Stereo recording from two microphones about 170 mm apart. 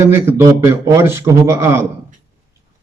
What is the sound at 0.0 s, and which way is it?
A man's voice, 15° right (ahead or behind).